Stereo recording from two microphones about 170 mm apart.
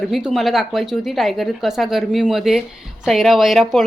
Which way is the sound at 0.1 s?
Centre (ahead or behind).